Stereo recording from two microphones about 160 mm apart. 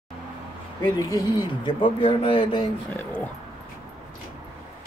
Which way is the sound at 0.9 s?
20° left (ahead or behind).